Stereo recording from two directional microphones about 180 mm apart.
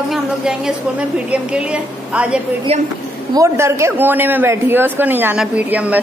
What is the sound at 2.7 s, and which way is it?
Speech, 35° right (ahead or behind).